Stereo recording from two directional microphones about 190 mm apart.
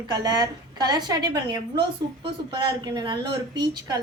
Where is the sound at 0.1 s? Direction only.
20° right (ahead or behind).